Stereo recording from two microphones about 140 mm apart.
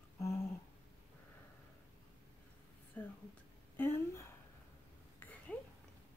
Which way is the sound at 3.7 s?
20° left (ahead or behind).